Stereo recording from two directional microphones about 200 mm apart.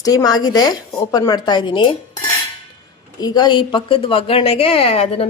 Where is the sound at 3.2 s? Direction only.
20° left (ahead or behind).